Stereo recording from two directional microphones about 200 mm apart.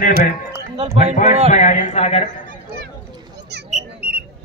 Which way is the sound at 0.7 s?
25° right (ahead or behind).